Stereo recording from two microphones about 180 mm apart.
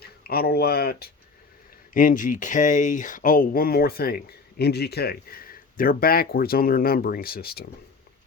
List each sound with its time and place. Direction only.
0.0 s speech: 60° left (ahead or behind)
1.9 s speech: 50° left (ahead or behind)